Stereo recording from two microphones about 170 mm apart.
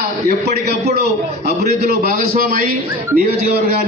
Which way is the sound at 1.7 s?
65° right (ahead or behind).